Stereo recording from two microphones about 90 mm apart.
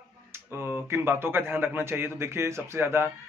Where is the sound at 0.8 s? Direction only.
25° right (ahead or behind).